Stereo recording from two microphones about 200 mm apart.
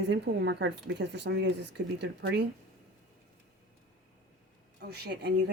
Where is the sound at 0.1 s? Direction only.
60° right (ahead or behind).